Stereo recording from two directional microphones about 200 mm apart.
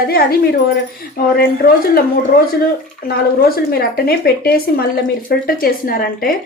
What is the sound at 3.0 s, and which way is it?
Speech, 50° left (ahead or behind).